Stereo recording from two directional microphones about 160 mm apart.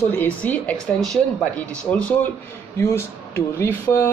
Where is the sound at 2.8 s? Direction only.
15° left (ahead or behind).